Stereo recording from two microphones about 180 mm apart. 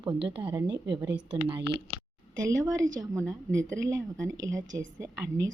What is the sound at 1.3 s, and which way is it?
A woman's voice, 25° right (ahead or behind).